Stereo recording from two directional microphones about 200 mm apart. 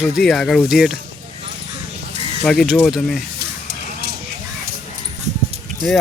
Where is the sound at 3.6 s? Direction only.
55° right (ahead or behind).